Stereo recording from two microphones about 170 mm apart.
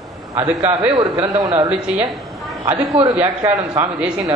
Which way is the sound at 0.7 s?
20° right (ahead or behind).